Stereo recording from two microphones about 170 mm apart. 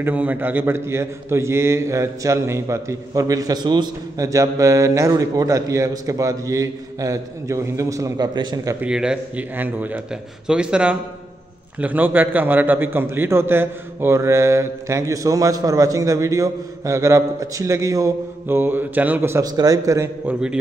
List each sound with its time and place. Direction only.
0.0 s a man's voice: 10° right (ahead or behind)
8.8 s a man's voice: 5° right (ahead or behind)